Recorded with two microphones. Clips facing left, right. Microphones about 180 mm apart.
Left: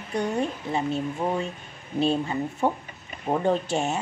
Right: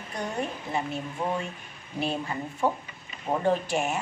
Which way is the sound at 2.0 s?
25° left (ahead or behind).